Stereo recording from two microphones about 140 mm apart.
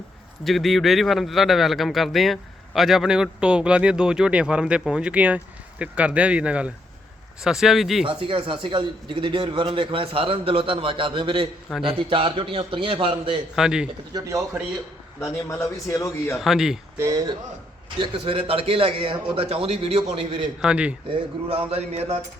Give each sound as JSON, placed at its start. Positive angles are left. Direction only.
{"t": 0.4, "sound": "speech", "side_deg": 0}
{"t": 8.0, "sound": "speech", "side_deg": -40}
{"t": 13.6, "sound": "speech", "side_deg": -5}
{"t": 14.1, "sound": "speech", "side_deg": -25}
{"t": 15.2, "sound": "a man's voice", "side_deg": 20}
{"t": 16.4, "sound": "speech", "side_deg": 0}
{"t": 17.0, "sound": "speech", "side_deg": -25}
{"t": 18.0, "sound": "speech", "side_deg": -40}
{"t": 20.6, "sound": "speech", "side_deg": -5}
{"t": 21.1, "sound": "speech", "side_deg": -45}